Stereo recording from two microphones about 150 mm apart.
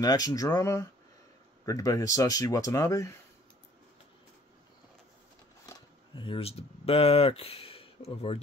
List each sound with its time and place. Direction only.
0.0 s speech: 25° left (ahead or behind)
5.7 s speech: 35° left (ahead or behind)